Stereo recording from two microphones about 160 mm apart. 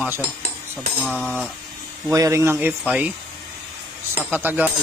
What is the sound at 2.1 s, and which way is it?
Speech, 20° right (ahead or behind).